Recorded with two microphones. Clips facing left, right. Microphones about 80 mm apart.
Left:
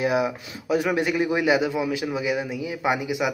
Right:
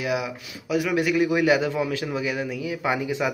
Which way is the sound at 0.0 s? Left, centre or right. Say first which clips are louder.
Left 4 dB; left.